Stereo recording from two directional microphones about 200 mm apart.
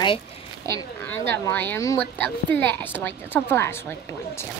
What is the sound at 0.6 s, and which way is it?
Speech, 10° left (ahead or behind).